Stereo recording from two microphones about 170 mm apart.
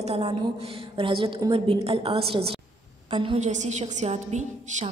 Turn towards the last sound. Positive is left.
turn(degrees=-40)  # may be behind; listen again after turning